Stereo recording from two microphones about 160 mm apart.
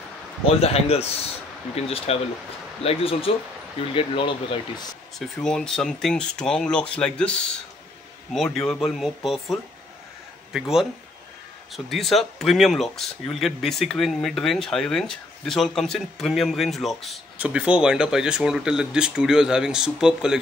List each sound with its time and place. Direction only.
0.6 s speech: 40° left (ahead or behind)
5.2 s speech: 5° left (ahead or behind)